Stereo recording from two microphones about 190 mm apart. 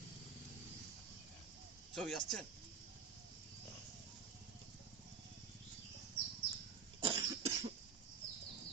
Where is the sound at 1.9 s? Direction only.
Centre (ahead or behind).